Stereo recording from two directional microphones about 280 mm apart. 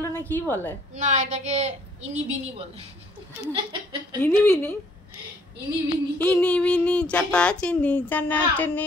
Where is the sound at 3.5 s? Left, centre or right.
Centre.